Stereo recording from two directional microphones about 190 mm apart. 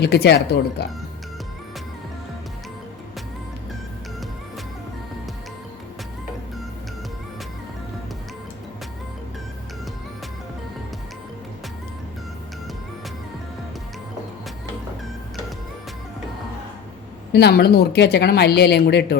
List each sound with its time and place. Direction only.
0.0 s speech: 60° left (ahead or behind)
17.3 s speech: 60° left (ahead or behind)